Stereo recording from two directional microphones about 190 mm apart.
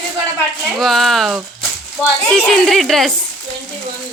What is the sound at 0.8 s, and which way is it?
A woman's voice, centre (ahead or behind).